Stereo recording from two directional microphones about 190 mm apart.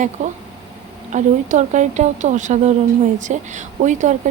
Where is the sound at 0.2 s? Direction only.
35° right (ahead or behind).